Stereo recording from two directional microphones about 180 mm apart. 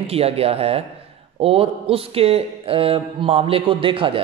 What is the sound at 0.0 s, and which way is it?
Speech, 35° right (ahead or behind).